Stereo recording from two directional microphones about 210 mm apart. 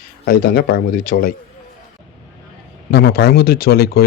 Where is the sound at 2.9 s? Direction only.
50° left (ahead or behind).